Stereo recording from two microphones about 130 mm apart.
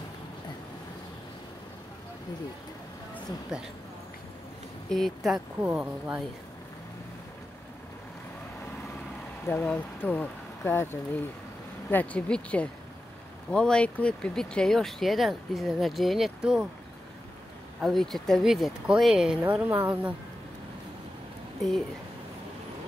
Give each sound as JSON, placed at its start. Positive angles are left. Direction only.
{"t": 3.3, "sound": "speech", "side_deg": -5}
{"t": 4.8, "sound": "speech", "side_deg": 0}
{"t": 5.6, "sound": "a woman's voice", "side_deg": -10}
{"t": 9.5, "sound": "speech", "side_deg": 15}
{"t": 17.7, "sound": "speech", "side_deg": 0}
{"t": 19.4, "sound": "a woman's voice", "side_deg": -15}
{"t": 21.5, "sound": "speech", "side_deg": 0}